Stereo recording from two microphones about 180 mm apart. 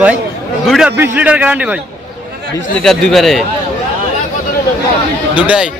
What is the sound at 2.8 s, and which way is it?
Speech, centre (ahead or behind).